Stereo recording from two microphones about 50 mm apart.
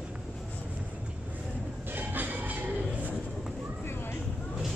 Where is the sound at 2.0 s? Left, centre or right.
Right.